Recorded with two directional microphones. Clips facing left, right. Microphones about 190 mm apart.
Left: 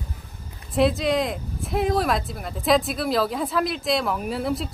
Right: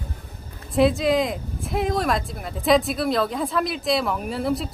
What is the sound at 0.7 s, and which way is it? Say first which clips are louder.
Speech: right 2 dB; centre (ahead or behind).